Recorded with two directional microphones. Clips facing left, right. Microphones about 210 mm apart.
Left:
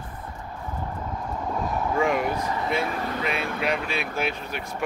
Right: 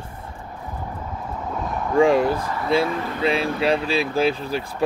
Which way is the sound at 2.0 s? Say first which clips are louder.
Right 9 dB; 30° right (ahead or behind).